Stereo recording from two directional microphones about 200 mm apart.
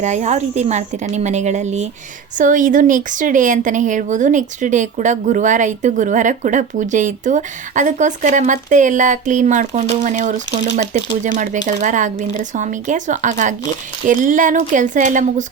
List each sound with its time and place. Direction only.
0.0 s speech: 35° right (ahead or behind)